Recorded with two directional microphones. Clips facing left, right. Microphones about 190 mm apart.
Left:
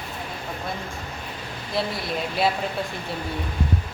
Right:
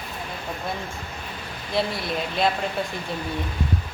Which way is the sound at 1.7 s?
Centre (ahead or behind).